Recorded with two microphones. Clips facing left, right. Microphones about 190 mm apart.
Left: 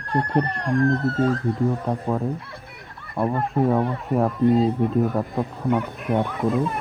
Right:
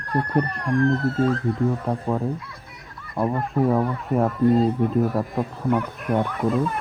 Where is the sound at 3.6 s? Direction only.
25° left (ahead or behind).